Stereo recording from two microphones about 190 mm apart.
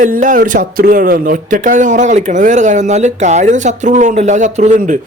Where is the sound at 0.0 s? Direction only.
40° right (ahead or behind).